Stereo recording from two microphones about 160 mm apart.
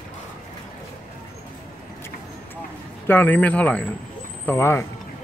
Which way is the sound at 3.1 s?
10° left (ahead or behind).